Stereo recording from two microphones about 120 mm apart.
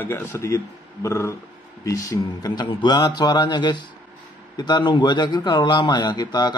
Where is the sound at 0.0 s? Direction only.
20° left (ahead or behind).